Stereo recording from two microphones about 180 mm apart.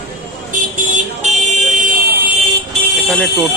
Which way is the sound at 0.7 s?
40° right (ahead or behind).